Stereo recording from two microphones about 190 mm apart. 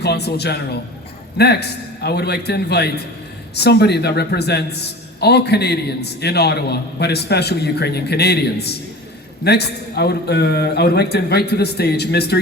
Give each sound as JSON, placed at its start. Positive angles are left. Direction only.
{"t": 0.0, "sound": "a man's voice", "side_deg": 60}